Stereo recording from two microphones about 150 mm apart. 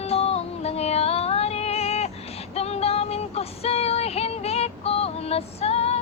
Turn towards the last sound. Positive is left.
turn(degrees=45)  # may be behind; listen again after turning